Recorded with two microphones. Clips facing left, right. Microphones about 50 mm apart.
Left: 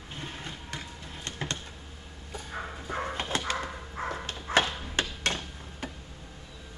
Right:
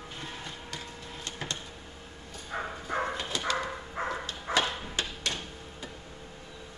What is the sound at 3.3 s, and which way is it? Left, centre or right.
Dog, left.